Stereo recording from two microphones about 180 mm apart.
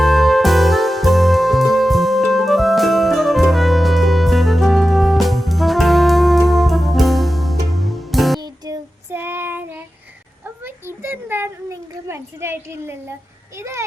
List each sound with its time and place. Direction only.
0.0 s music: centre (ahead or behind)
8.4 s child singing: 20° right (ahead or behind)
10.4 s a sound: 10° right (ahead or behind)